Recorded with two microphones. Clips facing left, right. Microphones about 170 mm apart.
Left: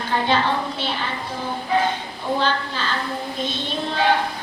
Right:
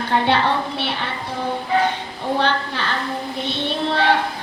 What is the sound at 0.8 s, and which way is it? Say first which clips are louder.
Speech: right 1 dB; 65° right (ahead or behind).